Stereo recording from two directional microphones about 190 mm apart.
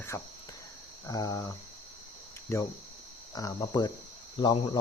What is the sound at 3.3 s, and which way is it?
Speech, 20° left (ahead or behind).